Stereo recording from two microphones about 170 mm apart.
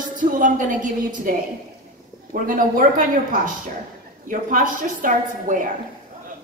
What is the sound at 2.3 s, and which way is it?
A woman's voice, 55° right (ahead or behind).